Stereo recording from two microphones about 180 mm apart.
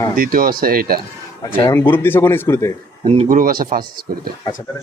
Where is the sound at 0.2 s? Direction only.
50° right (ahead or behind).